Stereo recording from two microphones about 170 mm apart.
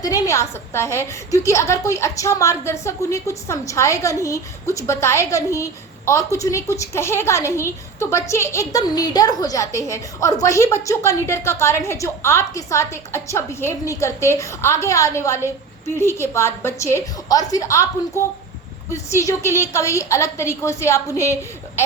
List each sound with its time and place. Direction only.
0.0 s a woman's voice: 20° left (ahead or behind)
19.1 s a woman's voice: 15° left (ahead or behind)